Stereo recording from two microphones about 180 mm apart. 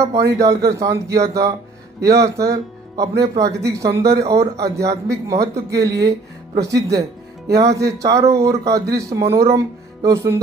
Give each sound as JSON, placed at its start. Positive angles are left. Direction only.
{"t": 0.3, "sound": "a man's voice", "side_deg": -15}